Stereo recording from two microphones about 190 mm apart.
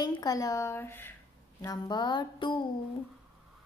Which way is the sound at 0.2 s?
20° left (ahead or behind).